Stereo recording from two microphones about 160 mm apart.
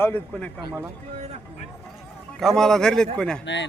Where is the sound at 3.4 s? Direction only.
90° left.